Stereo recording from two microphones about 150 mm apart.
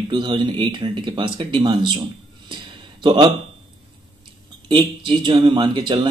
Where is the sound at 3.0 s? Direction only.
35° right (ahead or behind).